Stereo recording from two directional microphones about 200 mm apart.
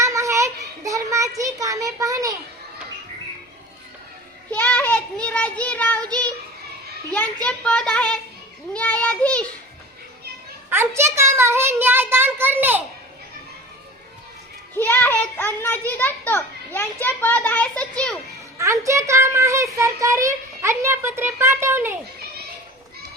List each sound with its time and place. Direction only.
0.0 s children playing: 15° right (ahead or behind)
0.9 s a sound: 15° right (ahead or behind)
4.5 s child singing: 10° left (ahead or behind)
7.4 s a child's voice: 5° left (ahead or behind)
10.7 s a child's voice: 10° right (ahead or behind)
14.8 s a sound: 10° left (ahead or behind)
18.6 s a child's voice: 15° right (ahead or behind)